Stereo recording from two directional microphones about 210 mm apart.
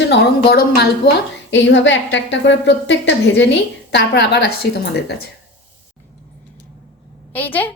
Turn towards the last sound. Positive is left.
turn(degrees=10)  # may be behind; listen again after turning